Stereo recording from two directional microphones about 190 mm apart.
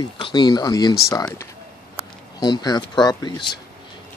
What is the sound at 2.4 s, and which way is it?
Speech, 20° left (ahead or behind).